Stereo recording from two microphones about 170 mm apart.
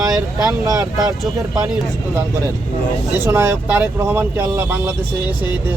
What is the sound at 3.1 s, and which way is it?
Speech, 15° right (ahead or behind).